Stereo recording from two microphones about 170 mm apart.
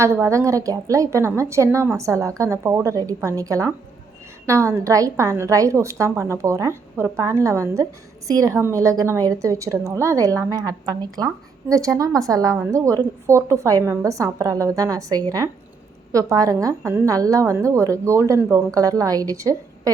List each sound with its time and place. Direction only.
0.0 s a woman's voice: 15° right (ahead or behind)